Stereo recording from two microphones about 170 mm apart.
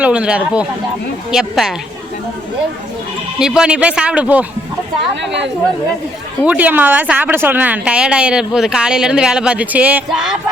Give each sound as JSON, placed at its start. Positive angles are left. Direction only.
{"t": 0.0, "sound": "a woman's voice", "side_deg": -5}
{"t": 3.3, "sound": "speech", "side_deg": -5}
{"t": 5.1, "sound": "a woman's voice", "side_deg": -90}
{"t": 6.4, "sound": "speech", "side_deg": -10}